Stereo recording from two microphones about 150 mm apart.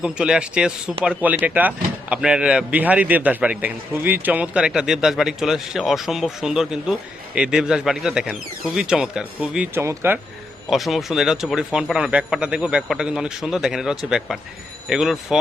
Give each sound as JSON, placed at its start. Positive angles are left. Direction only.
{"t": 0.0, "sound": "speech", "side_deg": -5}
{"t": 9.8, "sound": "speech", "side_deg": -15}
{"t": 10.7, "sound": "speech", "side_deg": 0}